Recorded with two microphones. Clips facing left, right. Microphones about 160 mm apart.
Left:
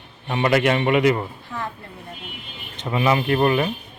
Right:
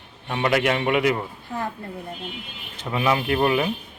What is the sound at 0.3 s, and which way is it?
Speech, centre (ahead or behind).